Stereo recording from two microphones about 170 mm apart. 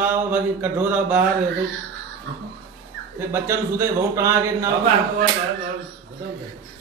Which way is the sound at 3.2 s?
15° right (ahead or behind).